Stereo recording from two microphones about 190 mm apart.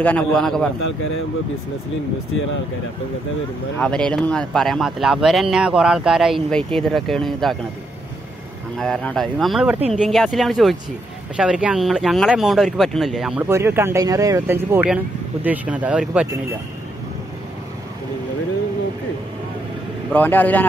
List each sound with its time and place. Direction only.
0.0 s speech: 5° left (ahead or behind)
3.8 s speech: 5° left (ahead or behind)
8.7 s speech: centre (ahead or behind)
13.5 s speech: 15° right (ahead or behind)
20.1 s a man's voice: 10° left (ahead or behind)